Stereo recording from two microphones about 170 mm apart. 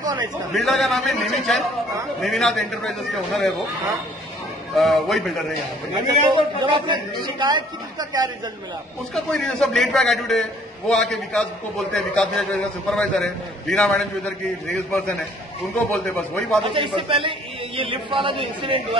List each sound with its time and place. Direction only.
0.0 s a sound: 25° right (ahead or behind)
0.5 s a man's voice: centre (ahead or behind)
4.7 s a man's voice: centre (ahead or behind)
6.2 s a woman's voice: 30° right (ahead or behind)
9.1 s a man's voice: 5° left (ahead or behind)
16.6 s a man's voice: 30° right (ahead or behind)